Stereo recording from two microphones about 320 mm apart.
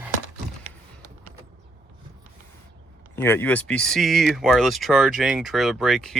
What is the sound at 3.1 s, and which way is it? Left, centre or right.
Speech, centre.